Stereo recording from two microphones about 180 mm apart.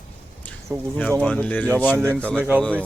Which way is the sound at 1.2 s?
5° left (ahead or behind).